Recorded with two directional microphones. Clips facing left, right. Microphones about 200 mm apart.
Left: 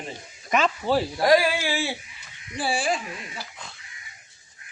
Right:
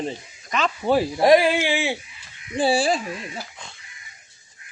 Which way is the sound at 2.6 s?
30° right (ahead or behind).